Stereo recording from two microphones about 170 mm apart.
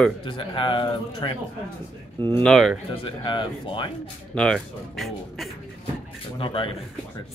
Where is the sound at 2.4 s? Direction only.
Centre (ahead or behind).